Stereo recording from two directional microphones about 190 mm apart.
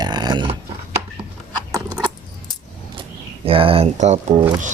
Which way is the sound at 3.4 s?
30° right (ahead or behind).